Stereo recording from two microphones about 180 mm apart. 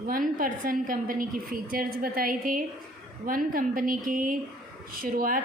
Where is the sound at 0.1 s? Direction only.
50° right (ahead or behind).